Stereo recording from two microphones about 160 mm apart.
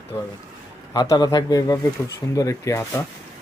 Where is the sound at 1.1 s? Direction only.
25° left (ahead or behind).